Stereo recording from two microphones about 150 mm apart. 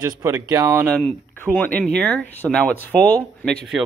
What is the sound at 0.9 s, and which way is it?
Speech, 10° left (ahead or behind).